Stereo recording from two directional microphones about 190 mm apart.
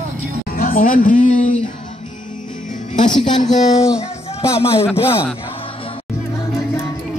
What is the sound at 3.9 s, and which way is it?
Music, 15° left (ahead or behind).